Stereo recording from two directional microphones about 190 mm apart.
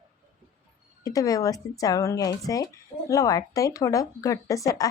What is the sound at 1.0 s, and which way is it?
Speech, 20° left (ahead or behind).